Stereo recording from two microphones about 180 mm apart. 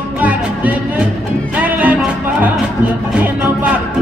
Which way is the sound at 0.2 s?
10° right (ahead or behind).